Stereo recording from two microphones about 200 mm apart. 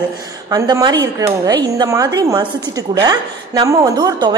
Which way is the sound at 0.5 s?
15° right (ahead or behind).